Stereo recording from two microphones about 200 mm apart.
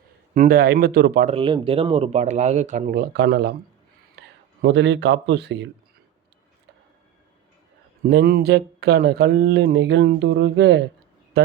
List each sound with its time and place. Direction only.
0.3 s speech: 50° right (ahead or behind)
1.3 s speech: 25° right (ahead or behind); by 3.5 s 55° right (ahead or behind)
4.6 s speech: 60° right (ahead or behind)
8.0 s speech: 50° right (ahead or behind)